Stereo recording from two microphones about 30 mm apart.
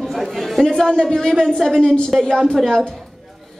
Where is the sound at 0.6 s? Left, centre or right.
Centre.